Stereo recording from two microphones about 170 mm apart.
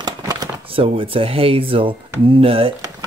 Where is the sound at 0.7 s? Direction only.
30° right (ahead or behind).